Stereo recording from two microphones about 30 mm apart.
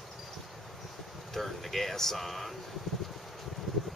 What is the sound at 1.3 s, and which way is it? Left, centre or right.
Speech, centre.